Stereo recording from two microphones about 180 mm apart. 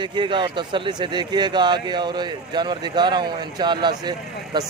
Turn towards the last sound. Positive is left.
turn(degrees=-25)  # may be behind; listen again after turning